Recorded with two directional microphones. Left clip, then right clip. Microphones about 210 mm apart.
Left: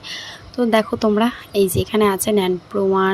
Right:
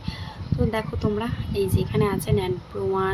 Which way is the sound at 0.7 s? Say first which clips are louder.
Left 13 dB; 40° left (ahead or behind).